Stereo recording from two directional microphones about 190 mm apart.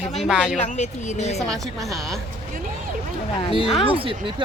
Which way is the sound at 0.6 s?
40° left (ahead or behind).